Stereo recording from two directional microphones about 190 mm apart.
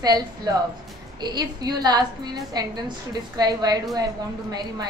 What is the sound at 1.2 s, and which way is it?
A woman's voice, 20° right (ahead or behind).